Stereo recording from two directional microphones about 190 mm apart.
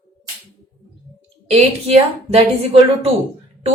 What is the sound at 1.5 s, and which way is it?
A woman's voice, 35° right (ahead or behind).